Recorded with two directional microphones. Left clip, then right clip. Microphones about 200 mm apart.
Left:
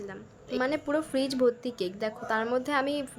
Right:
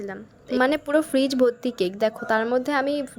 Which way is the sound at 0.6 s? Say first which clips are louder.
Right 8 dB; 35° right (ahead or behind).